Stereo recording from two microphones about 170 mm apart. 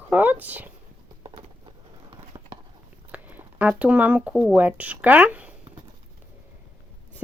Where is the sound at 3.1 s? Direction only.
10° right (ahead or behind).